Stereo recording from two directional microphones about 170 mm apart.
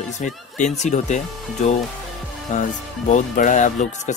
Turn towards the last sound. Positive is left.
turn(degrees=45)  # may be behind; listen again after turning